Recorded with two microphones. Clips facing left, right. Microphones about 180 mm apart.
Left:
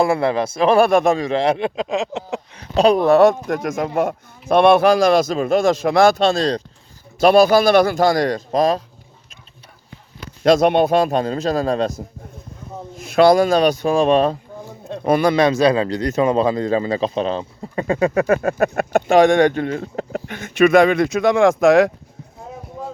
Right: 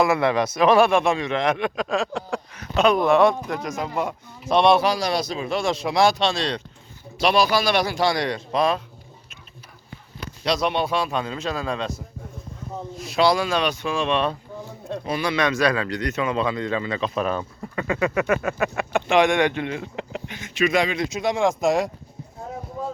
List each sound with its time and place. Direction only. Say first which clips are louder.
0.0 s speech: left 2 dB; 30° left (ahead or behind)
2.7 s speech: left 5 dB; 35° left (ahead or behind)
10.4 s speech: left 9 dB; 50° left (ahead or behind)
13.0 s speech: left 8 dB; 50° left (ahead or behind)
15.0 s speech: left 10 dB; 50° left (ahead or behind)
15.4 s speech: left 7 dB; 30° left (ahead or behind); by 21.7 s 55° left (ahead or behind)
21.7 s speech: left 9 dB; 90° left